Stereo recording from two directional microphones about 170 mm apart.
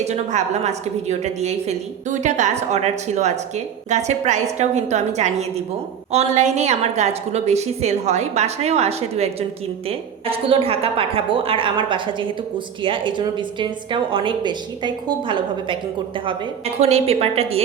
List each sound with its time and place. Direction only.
0.0 s a woman's voice: 45° right (ahead or behind)
16.8 s a woman's voice: 35° right (ahead or behind)